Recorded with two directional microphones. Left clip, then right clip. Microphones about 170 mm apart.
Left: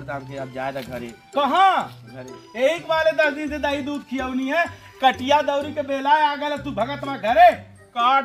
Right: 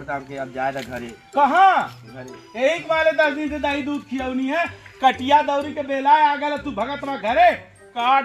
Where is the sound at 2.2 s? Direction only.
Centre (ahead or behind).